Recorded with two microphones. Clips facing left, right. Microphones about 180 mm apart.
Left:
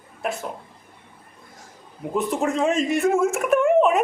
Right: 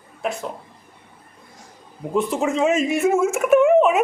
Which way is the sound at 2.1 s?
Centre (ahead or behind).